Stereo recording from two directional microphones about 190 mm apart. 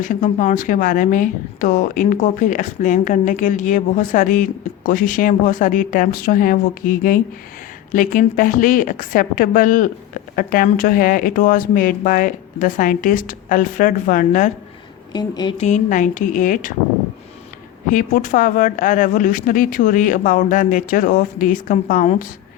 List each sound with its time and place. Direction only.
0.0 s a woman's voice: 40° left (ahead or behind)
15.1 s speech: 20° left (ahead or behind)
15.5 s a woman's voice: 40° left (ahead or behind)
17.9 s a woman's voice: 40° left (ahead or behind)